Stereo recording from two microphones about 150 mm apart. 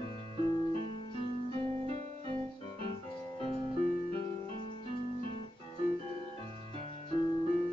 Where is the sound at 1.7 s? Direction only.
40° right (ahead or behind).